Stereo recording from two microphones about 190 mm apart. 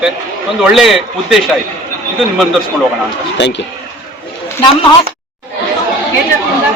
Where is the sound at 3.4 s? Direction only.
65° left (ahead or behind).